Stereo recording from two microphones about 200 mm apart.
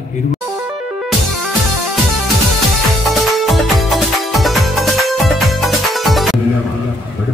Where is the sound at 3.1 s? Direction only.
Centre (ahead or behind).